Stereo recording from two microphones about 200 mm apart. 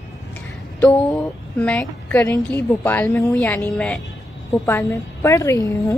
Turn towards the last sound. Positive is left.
turn(degrees=15)  # may be behind; listen again after turning